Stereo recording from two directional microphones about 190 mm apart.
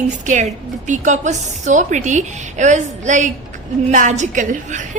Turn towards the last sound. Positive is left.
turn(degrees=-40)  # may be behind; listen again after turning